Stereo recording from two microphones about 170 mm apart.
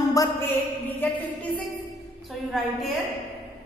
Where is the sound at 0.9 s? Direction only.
10° left (ahead or behind).